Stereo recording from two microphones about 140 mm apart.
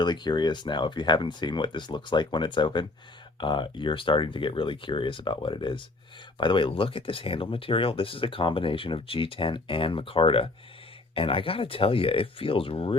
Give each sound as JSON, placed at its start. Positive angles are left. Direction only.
{"t": 0.0, "sound": "speech", "side_deg": 30}